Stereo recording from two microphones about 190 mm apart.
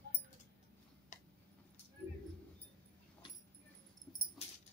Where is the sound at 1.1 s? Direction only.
40° left (ahead or behind).